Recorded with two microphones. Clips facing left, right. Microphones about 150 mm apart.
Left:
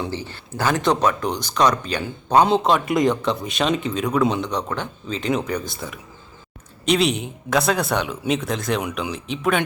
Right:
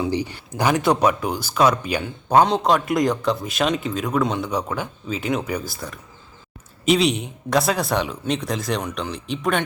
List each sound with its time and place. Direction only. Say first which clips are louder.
0.1 s speech: right 5 dB; 15° right (ahead or behind); by 8.8 s centre (ahead or behind)
8.8 s speech: left 1 dB; 10° left (ahead or behind)